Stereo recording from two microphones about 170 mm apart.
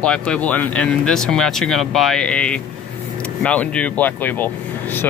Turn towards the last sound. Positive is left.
turn(degrees=10)  # may be behind; listen again after turning